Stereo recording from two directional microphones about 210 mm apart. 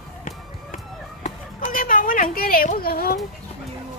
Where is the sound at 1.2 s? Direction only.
35° left (ahead or behind).